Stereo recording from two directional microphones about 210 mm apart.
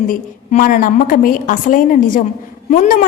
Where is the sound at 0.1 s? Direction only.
40° left (ahead or behind).